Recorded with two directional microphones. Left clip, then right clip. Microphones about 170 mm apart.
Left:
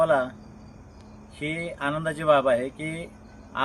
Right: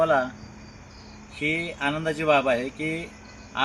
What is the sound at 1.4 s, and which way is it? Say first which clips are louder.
Speech: right 3 dB; 20° left (ahead or behind).